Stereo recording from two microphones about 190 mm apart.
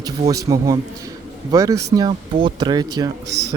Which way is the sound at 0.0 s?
20° right (ahead or behind).